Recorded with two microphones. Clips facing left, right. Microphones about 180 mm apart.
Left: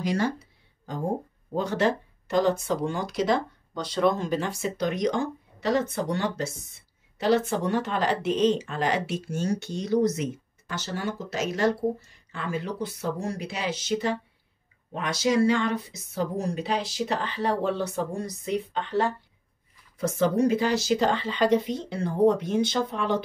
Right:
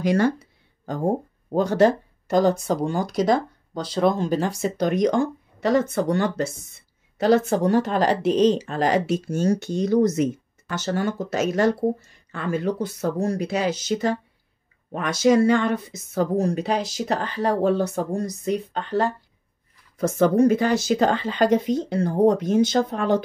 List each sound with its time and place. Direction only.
0.0 s speech: 55° right (ahead or behind)
1.5 s speech: 40° right (ahead or behind)